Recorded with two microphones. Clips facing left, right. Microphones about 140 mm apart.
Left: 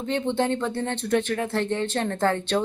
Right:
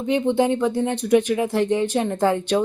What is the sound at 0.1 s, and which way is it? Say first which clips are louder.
Speech: right 5 dB; 10° right (ahead or behind).